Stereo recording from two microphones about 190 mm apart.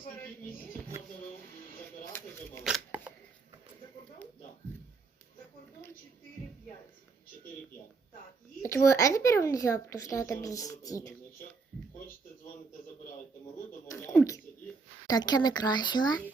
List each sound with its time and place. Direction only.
2.6 s shuffling cards: 5° right (ahead or behind)
8.6 s speech: 15° left (ahead or behind)
13.8 s a sound: 15° left (ahead or behind)
15.0 s speech: 20° left (ahead or behind)